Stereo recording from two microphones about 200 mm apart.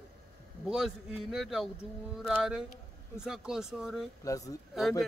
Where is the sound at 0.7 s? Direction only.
Centre (ahead or behind).